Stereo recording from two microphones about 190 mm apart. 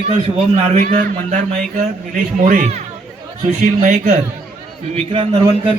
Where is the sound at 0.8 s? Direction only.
40° right (ahead or behind).